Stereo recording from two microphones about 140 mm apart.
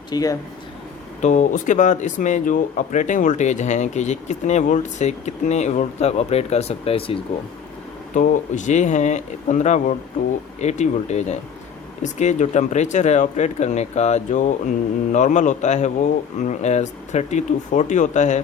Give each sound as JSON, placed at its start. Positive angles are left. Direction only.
{"t": 0.1, "sound": "speech", "side_deg": 25}
{"t": 1.2, "sound": "speech", "side_deg": 60}
{"t": 8.1, "sound": "speech", "side_deg": 70}